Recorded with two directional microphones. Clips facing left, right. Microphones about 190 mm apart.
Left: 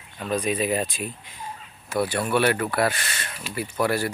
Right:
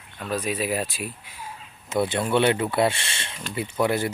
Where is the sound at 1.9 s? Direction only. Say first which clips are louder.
Right 1 dB; 25° right (ahead or behind).